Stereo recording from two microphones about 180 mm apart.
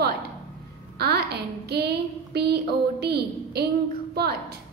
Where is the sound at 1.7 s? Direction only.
65° right (ahead or behind).